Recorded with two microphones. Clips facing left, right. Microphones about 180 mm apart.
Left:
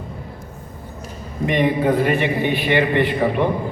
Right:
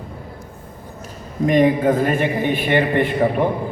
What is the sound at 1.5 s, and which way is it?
A man's voice, 45° right (ahead or behind).